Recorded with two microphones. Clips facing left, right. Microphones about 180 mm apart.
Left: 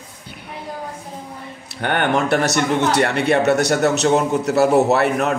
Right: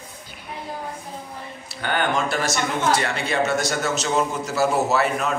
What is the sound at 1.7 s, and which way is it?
Speech, 65° left (ahead or behind).